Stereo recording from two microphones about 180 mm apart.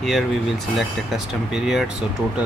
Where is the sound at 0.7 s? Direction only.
Centre (ahead or behind).